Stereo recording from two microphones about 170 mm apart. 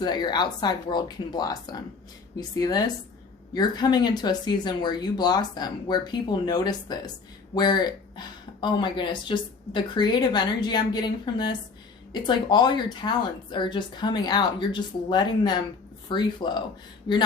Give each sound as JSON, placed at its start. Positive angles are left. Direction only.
{"t": 0.0, "sound": "speech", "side_deg": 25}